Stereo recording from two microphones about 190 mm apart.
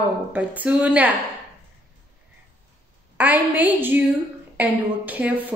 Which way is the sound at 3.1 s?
10° right (ahead or behind).